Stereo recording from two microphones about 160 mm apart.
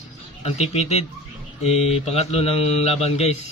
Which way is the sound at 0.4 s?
40° left (ahead or behind).